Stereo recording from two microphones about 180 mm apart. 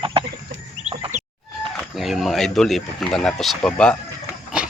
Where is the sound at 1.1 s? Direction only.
40° right (ahead or behind).